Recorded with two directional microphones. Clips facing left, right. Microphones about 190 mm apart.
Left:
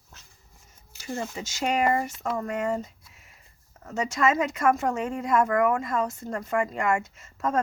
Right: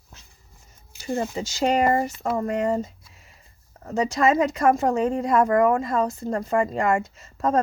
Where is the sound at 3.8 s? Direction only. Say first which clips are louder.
Right 4 dB; 35° right (ahead or behind).